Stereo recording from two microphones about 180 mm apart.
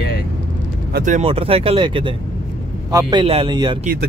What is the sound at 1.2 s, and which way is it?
A man's voice, 30° right (ahead or behind).